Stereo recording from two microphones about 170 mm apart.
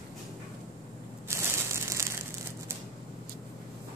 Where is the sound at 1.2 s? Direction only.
15° right (ahead or behind).